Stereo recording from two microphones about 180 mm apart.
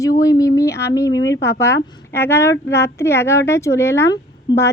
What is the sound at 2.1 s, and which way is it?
A woman's voice, 15° left (ahead or behind).